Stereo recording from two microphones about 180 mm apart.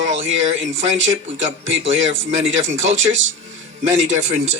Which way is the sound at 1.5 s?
90° right.